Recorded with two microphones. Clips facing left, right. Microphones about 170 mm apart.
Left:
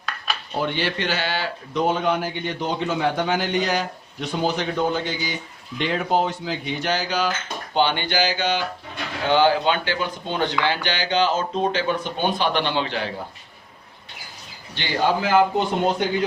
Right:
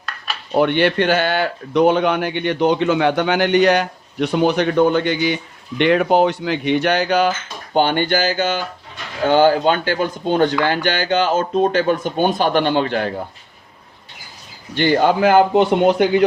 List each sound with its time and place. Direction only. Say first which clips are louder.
0.5 s speech: right 10 dB; 65° right (ahead or behind)
14.8 s speech: right 7 dB; 55° right (ahead or behind); by 16.2 s 70° right (ahead or behind)